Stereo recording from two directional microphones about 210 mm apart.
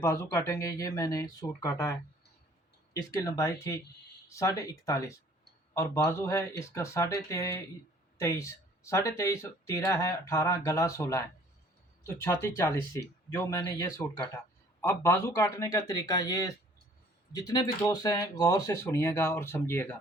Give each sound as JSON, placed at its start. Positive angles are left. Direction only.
{"t": 0.0, "sound": "speech", "side_deg": 15}